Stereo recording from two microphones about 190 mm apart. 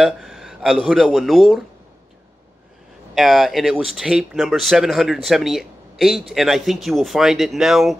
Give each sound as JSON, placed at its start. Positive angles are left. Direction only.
{"t": 0.0, "sound": "speech", "side_deg": 0}
{"t": 3.2, "sound": "speech", "side_deg": 0}